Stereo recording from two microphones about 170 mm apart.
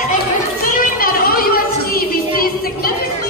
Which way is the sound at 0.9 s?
60° left (ahead or behind).